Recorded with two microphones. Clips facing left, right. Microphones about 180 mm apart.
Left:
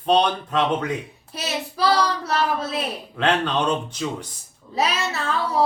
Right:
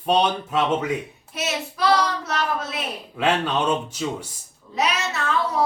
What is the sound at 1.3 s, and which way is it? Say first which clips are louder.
Child singing: even; 35° left (ahead or behind).